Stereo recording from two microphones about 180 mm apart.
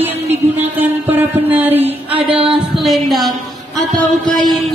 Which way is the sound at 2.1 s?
30° right (ahead or behind).